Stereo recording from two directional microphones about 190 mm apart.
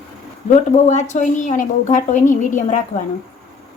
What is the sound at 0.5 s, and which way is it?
A woman's voice, 40° left (ahead or behind).